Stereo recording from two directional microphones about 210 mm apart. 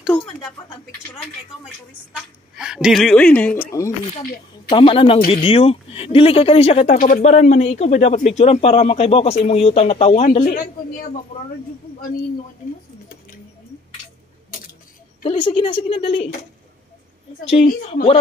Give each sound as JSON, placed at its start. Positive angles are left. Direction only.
{"t": 0.1, "sound": "a woman's voice", "side_deg": 0}
{"t": 2.5, "sound": "a woman's voice", "side_deg": -5}
{"t": 4.6, "sound": "speech", "side_deg": 25}
{"t": 10.4, "sound": "speech", "side_deg": 45}
{"t": 11.3, "sound": "speech", "side_deg": 30}
{"t": 15.2, "sound": "speech", "side_deg": 25}
{"t": 17.5, "sound": "speech", "side_deg": 25}